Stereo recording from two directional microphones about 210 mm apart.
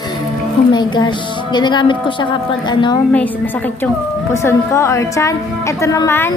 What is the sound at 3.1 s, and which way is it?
A woman's voice, 10° left (ahead or behind).